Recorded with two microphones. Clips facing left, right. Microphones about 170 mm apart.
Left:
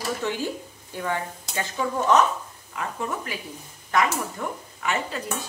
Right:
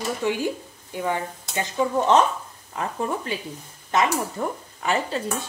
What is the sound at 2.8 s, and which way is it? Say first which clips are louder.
A woman's voice: right 3 dB; 30° right (ahead or behind).